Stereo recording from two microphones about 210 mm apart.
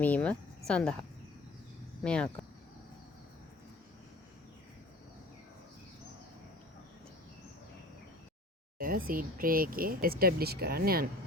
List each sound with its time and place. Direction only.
0.0 s speech: 5° left (ahead or behind)
2.0 s speech: 5° left (ahead or behind)
8.8 s speech: 45° right (ahead or behind)